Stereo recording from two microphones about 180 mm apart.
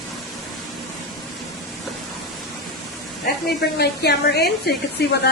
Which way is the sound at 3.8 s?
65° left (ahead or behind).